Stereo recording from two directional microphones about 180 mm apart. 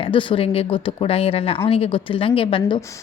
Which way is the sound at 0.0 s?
30° left (ahead or behind).